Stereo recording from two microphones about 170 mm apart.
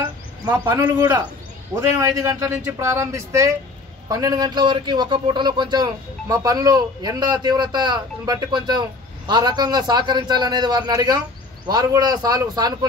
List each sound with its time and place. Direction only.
0.5 s a man's voice: 15° right (ahead or behind)